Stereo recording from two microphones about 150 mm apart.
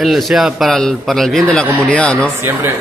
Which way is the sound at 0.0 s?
Centre (ahead or behind).